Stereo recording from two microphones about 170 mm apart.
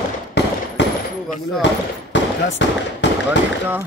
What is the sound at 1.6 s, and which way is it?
Speech, 90° left.